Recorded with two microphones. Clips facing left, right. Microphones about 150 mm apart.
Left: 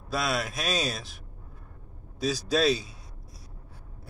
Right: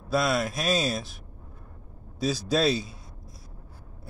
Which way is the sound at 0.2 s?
Centre (ahead or behind).